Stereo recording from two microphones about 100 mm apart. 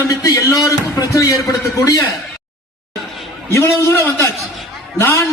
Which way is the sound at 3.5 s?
30° left (ahead or behind).